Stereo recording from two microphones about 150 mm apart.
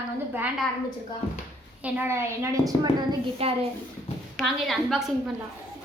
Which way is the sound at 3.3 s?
40° right (ahead or behind).